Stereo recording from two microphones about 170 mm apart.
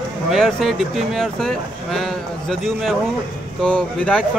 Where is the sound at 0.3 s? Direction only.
Centre (ahead or behind).